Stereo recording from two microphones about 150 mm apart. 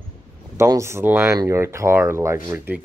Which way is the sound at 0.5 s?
20° right (ahead or behind).